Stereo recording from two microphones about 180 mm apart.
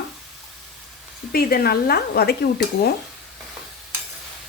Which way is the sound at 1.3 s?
55° left (ahead or behind).